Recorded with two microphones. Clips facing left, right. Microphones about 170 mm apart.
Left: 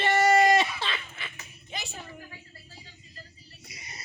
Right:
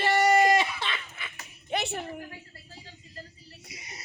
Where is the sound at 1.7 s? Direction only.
65° right (ahead or behind).